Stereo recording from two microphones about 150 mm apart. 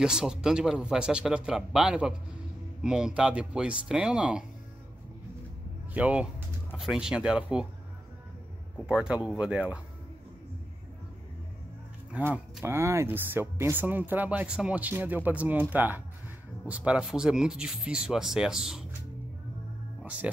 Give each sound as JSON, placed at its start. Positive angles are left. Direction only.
{"t": 0.0, "sound": "speech", "side_deg": -5}
{"t": 5.9, "sound": "speech", "side_deg": -10}
{"t": 8.7, "sound": "speech", "side_deg": -5}
{"t": 12.1, "sound": "speech", "side_deg": -15}
{"t": 20.0, "sound": "music", "side_deg": -10}